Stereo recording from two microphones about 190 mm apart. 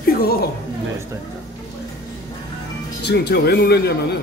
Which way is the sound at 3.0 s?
60° left (ahead or behind).